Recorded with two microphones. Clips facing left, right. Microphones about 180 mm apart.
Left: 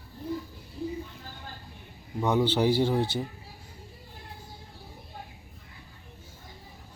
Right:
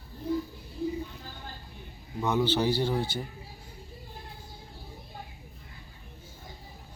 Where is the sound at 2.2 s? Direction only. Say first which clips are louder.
Left 2 dB; 15° left (ahead or behind).